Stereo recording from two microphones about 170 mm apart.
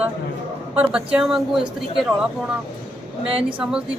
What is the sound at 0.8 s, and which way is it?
A woman's voice, 5° right (ahead or behind).